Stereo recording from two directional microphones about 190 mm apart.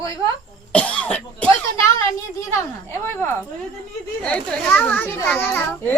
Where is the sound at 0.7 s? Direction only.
5° left (ahead or behind).